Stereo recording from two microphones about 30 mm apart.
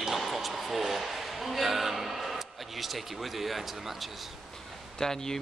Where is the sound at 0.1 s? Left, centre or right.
Centre.